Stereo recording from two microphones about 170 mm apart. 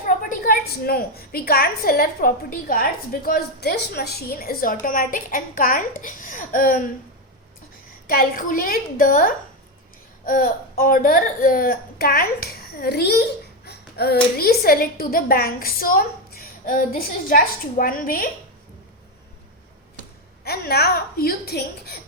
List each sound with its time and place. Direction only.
0.0 s a woman's voice: 55° left (ahead or behind)
8.0 s a woman's voice: 60° left (ahead or behind)
13.7 s a sound: 70° left (ahead or behind)
14.3 s a woman's voice: 65° left (ahead or behind)
20.4 s a woman's voice: 70° left (ahead or behind)